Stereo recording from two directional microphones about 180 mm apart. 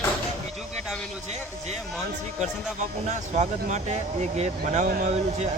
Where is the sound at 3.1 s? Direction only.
40° right (ahead or behind).